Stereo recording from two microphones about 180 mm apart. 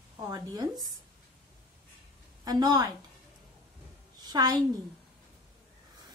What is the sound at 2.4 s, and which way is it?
Speech, 20° right (ahead or behind).